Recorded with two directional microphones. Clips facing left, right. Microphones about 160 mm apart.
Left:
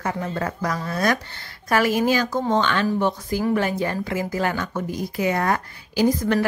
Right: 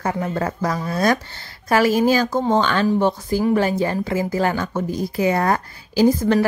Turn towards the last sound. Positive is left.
turn(degrees=-30)  # may be behind; listen again after turning